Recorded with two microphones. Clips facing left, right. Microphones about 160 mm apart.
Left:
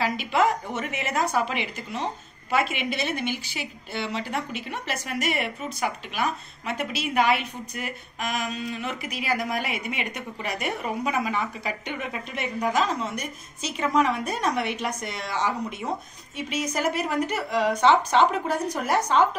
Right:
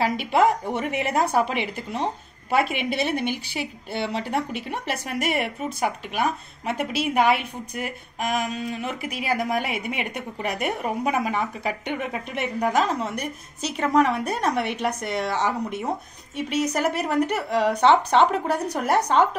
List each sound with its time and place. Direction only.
0.0 s a woman's voice: 55° right (ahead or behind)